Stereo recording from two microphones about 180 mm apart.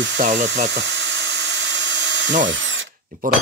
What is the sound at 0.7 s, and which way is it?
Dental drill, 85° right.